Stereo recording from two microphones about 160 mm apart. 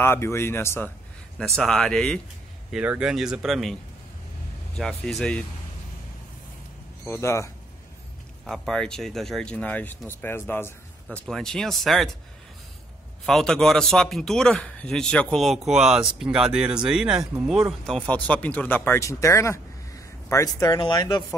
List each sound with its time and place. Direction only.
0.0 s speech: 15° left (ahead or behind)
2.7 s speech: 5° right (ahead or behind)
4.7 s speech: 5° left (ahead or behind)
7.1 s speech: 15° left (ahead or behind)
8.5 s speech: 5° left (ahead or behind)
11.1 s speech: 5° left (ahead or behind)
13.2 s speech: centre (ahead or behind); by 21.4 s 25° left (ahead or behind)